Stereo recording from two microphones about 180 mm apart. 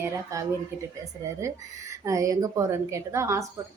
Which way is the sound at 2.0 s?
20° right (ahead or behind).